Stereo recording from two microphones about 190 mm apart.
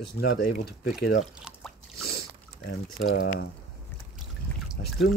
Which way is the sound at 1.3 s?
5° right (ahead or behind).